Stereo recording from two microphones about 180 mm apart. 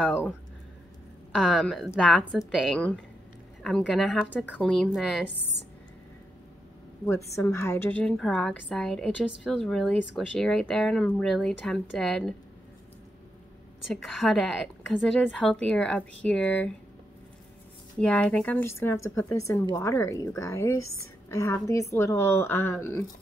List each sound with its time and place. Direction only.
0.0 s a woman's voice: 5° right (ahead or behind)
1.3 s a woman's voice: centre (ahead or behind)
7.1 s a woman's voice: 15° left (ahead or behind)
13.9 s a woman's voice: centre (ahead or behind)
17.9 s a woman's voice: 5° left (ahead or behind)